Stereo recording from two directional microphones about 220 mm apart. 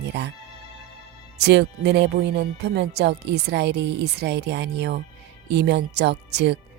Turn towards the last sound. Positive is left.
turn(degrees=-50)  # may be behind; listen again after turning